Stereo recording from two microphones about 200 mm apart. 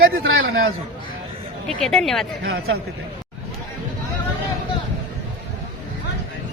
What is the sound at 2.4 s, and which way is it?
Speech, 80° right.